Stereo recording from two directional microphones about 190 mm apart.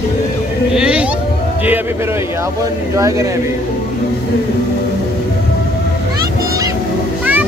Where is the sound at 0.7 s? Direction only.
5° right (ahead or behind).